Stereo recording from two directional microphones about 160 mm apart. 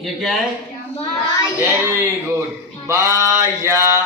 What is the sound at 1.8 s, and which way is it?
A man's voice, 15° right (ahead or behind).